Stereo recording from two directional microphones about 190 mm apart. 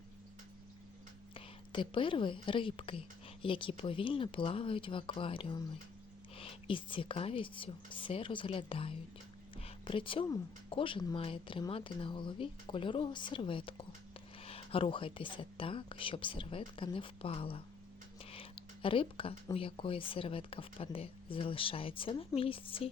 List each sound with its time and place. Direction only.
1.3 s a woman's voice: 25° left (ahead or behind)